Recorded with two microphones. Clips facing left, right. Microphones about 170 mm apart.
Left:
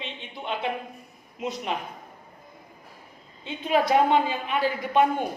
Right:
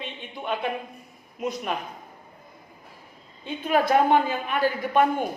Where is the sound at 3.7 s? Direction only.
50° right (ahead or behind).